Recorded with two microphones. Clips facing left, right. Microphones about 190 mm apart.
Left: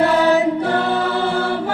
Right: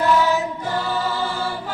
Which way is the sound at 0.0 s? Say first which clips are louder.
Left 4 dB; 65° left (ahead or behind).